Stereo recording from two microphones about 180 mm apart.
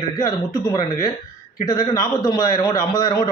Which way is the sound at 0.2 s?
20° left (ahead or behind).